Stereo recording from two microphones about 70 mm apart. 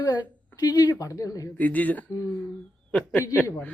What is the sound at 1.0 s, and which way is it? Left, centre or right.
Speech, left.